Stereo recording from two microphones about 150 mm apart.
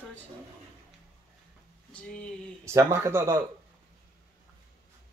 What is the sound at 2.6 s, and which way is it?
Speech, 20° right (ahead or behind).